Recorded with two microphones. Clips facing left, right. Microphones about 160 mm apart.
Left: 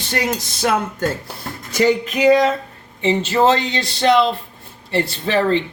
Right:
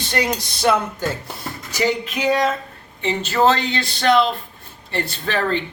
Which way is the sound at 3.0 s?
25° left (ahead or behind).